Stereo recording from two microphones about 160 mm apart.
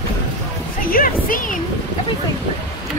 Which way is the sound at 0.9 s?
60° left (ahead or behind).